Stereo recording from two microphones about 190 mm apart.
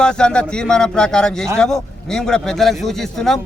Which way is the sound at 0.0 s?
5° left (ahead or behind).